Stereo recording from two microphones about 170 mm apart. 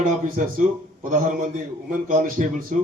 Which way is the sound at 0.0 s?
50° right (ahead or behind).